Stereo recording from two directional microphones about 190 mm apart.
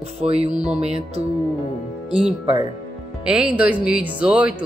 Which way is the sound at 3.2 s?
5° right (ahead or behind).